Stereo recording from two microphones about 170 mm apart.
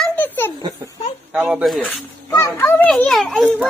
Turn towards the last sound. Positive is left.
turn(degrees=0)  # may be behind; listen again after turning